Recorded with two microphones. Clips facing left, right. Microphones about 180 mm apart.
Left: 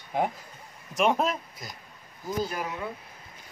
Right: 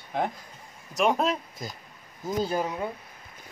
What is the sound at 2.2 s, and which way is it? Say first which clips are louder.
Speech: right 3 dB; 30° right (ahead or behind).